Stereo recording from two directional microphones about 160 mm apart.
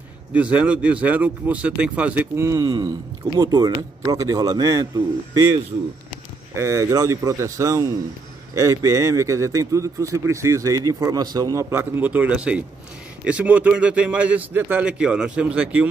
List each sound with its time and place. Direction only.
0.3 s speech: 10° right (ahead or behind)